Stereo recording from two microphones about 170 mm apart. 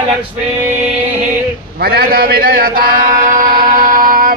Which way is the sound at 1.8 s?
65° right (ahead or behind).